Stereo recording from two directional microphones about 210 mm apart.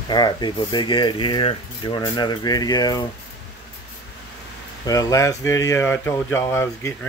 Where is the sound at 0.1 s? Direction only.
20° left (ahead or behind).